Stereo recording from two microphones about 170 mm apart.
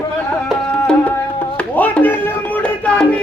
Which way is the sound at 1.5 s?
10° left (ahead or behind).